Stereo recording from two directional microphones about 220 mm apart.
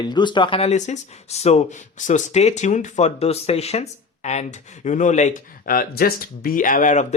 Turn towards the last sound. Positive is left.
turn(degrees=35)  # may be behind; listen again after turning